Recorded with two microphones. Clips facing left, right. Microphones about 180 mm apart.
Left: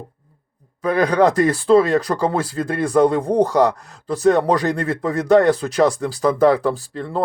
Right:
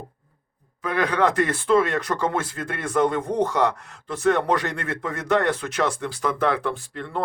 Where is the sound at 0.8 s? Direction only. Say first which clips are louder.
Left 6 dB; 40° left (ahead or behind).